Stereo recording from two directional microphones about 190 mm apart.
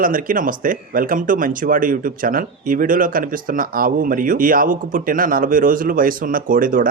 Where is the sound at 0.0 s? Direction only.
45° right (ahead or behind).